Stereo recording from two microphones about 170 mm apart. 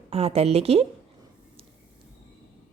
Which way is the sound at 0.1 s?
35° right (ahead or behind).